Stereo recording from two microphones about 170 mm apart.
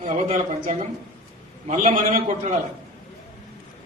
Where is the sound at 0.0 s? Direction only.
45° right (ahead or behind).